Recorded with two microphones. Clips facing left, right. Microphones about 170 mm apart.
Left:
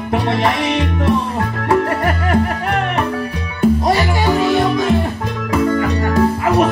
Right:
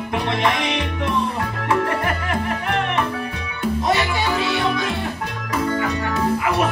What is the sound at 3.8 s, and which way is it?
Music, 40° left (ahead or behind).